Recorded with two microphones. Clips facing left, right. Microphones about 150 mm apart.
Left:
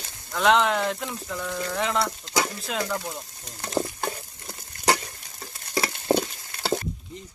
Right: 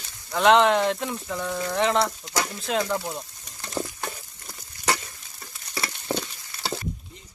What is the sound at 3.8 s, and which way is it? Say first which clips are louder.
Frying: left 4 dB; 35° left (ahead or behind).